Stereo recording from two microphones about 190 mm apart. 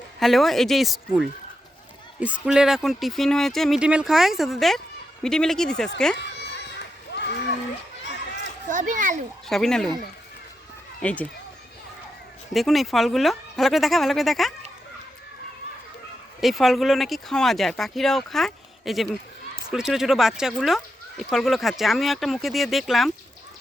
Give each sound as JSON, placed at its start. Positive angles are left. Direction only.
{"t": 0.2, "sound": "speech", "side_deg": 0}
{"t": 6.1, "sound": "a sound", "side_deg": 65}
{"t": 8.6, "sound": "a child's voice", "side_deg": -40}
{"t": 9.5, "sound": "speech", "side_deg": 0}
{"t": 11.0, "sound": "speech", "side_deg": 10}
{"t": 12.5, "sound": "speech", "side_deg": 0}
{"t": 16.4, "sound": "speech", "side_deg": 0}